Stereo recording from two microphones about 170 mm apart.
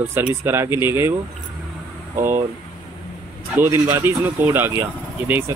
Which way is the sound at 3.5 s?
15° right (ahead or behind).